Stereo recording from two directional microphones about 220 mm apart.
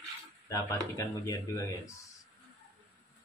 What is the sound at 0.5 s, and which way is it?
Speech, 15° left (ahead or behind).